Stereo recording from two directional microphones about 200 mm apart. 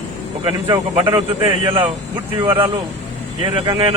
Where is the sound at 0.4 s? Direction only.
25° right (ahead or behind).